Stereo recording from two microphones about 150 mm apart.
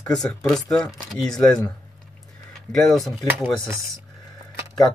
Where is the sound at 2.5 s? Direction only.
Centre (ahead or behind).